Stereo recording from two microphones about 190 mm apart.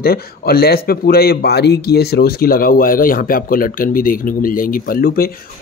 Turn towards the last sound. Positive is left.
turn(degrees=50)  # may be behind; listen again after turning